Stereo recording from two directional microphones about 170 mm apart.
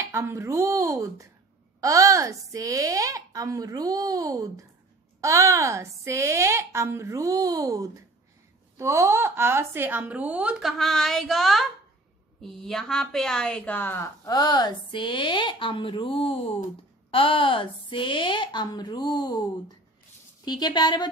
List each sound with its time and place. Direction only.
0.0 s a woman's voice: 15° right (ahead or behind); by 19.4 s 25° left (ahead or behind)
20.4 s a woman's voice: 25° left (ahead or behind)